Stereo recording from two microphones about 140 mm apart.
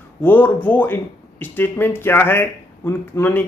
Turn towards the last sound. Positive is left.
turn(degrees=15)  # may be behind; listen again after turning